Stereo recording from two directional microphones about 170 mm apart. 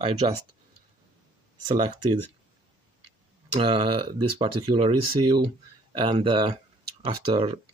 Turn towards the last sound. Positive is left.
turn(degrees=-30)  # may be behind; listen again after turning